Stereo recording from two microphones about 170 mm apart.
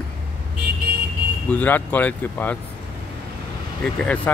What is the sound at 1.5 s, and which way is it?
Speech, 10° left (ahead or behind).